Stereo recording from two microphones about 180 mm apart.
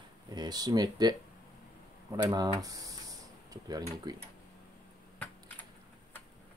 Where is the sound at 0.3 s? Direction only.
20° right (ahead or behind).